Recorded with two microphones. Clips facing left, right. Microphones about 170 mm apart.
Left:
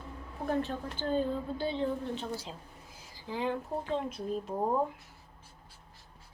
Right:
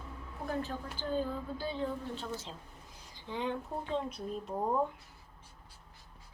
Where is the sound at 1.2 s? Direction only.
25° left (ahead or behind).